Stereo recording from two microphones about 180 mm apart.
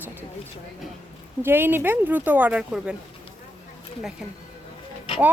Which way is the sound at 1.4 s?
10° right (ahead or behind).